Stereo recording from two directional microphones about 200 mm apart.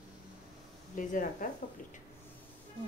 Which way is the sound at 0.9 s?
40° left (ahead or behind).